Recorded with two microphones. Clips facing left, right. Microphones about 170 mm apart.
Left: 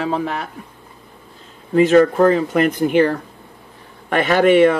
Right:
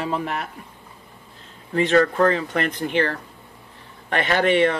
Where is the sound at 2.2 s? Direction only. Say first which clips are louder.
Left 6 dB; 10° left (ahead or behind).